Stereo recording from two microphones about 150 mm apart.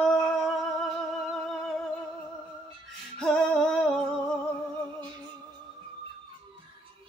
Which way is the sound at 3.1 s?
5° left (ahead or behind).